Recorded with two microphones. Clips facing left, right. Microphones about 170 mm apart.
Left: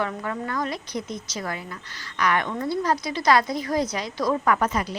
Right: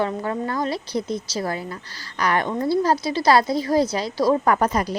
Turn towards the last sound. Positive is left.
turn(degrees=-40)  # may be behind; listen again after turning